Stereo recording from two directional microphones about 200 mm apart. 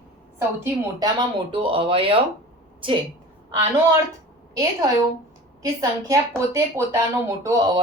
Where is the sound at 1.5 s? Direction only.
25° right (ahead or behind).